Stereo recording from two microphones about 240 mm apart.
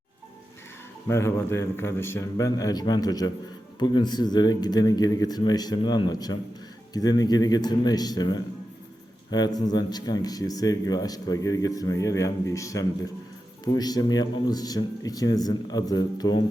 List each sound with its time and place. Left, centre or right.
1.0 s speech: centre